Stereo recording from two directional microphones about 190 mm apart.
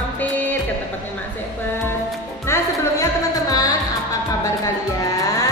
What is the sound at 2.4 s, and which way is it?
Music, 15° left (ahead or behind).